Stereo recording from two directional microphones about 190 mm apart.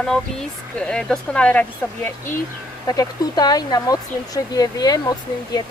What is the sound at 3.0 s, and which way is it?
Speech, 20° left (ahead or behind).